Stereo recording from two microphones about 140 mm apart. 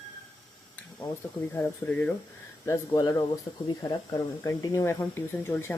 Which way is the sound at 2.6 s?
25° left (ahead or behind).